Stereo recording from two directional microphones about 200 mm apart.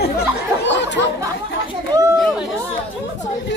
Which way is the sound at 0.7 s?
60° left (ahead or behind).